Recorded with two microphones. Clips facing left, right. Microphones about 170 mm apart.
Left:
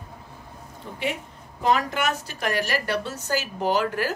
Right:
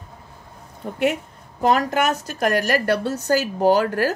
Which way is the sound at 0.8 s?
55° right (ahead or behind).